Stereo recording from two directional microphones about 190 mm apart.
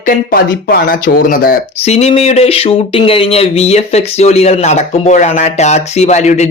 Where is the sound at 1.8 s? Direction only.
35° left (ahead or behind).